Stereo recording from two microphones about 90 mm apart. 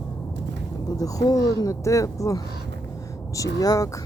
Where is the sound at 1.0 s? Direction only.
40° left (ahead or behind).